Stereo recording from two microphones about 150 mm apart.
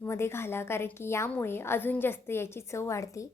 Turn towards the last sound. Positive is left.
turn(degrees=20)  # may be behind; listen again after turning